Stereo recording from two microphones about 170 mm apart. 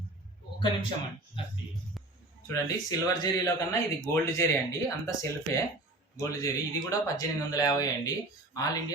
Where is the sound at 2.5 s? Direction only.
20° left (ahead or behind).